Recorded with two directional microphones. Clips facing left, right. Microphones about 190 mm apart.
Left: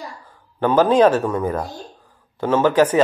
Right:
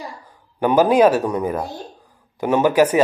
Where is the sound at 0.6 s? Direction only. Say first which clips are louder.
Even; 10° right (ahead or behind).